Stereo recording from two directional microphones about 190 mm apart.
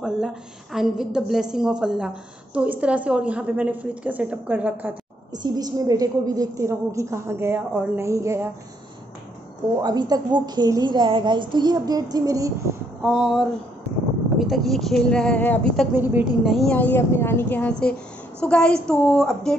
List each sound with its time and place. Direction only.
0.0 s a woman's voice: centre (ahead or behind)
5.3 s a woman's voice: 20° right (ahead or behind)
9.8 s a woman's voice: 20° right (ahead or behind)
13.0 s a woman's voice: 5° right (ahead or behind)
15.9 s a woman's voice: 10° right (ahead or behind)